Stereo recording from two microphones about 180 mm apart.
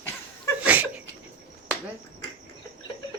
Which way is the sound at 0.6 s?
10° right (ahead or behind).